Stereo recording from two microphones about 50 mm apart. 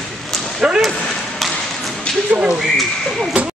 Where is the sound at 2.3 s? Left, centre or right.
Right.